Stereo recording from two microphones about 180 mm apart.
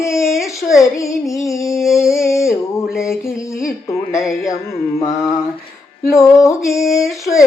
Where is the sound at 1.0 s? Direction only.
15° left (ahead or behind).